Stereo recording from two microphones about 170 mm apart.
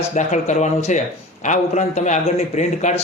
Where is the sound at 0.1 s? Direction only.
45° left (ahead or behind).